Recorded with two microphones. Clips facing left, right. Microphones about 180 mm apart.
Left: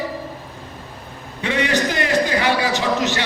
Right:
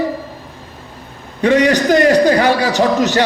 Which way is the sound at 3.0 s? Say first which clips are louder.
Right 8 dB; 45° right (ahead or behind).